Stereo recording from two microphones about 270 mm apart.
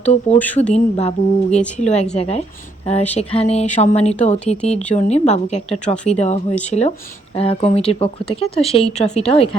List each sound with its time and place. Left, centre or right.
0.0 s a woman's voice: left
0.3 s speech: centre
0.7 s a woman's voice: left